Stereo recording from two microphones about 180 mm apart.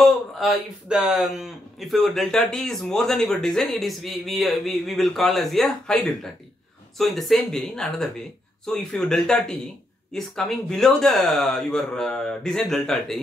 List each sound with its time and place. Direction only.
0.0 s speech: centre (ahead or behind)